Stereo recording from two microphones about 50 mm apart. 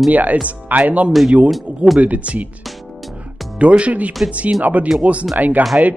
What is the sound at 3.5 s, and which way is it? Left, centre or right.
Speech, right.